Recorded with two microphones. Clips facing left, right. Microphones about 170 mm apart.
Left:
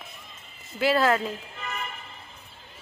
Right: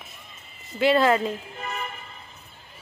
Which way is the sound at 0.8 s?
Centre (ahead or behind).